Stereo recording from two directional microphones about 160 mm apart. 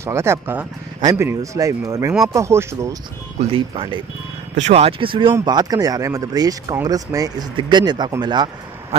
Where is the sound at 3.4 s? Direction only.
35° right (ahead or behind).